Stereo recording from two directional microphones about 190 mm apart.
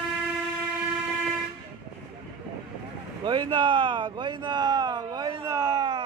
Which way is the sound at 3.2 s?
25° right (ahead or behind).